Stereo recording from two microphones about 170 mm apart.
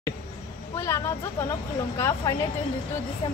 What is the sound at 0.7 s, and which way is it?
Speech, 15° left (ahead or behind).